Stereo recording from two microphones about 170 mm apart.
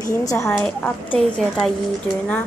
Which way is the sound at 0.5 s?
10° left (ahead or behind).